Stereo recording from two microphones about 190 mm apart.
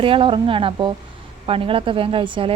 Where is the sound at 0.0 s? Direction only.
25° right (ahead or behind).